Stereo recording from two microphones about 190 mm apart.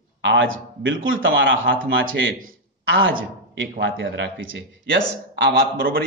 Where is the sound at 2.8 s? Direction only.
80° right.